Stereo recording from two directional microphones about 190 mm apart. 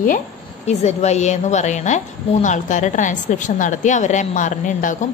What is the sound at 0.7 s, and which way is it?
A woman's voice, 35° left (ahead or behind).